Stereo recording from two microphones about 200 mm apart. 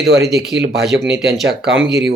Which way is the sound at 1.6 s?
55° right (ahead or behind).